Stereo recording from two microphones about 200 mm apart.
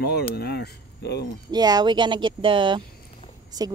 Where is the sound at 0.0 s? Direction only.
50° left (ahead or behind).